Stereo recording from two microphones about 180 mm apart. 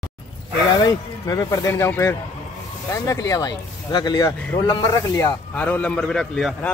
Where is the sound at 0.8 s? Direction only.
20° left (ahead or behind).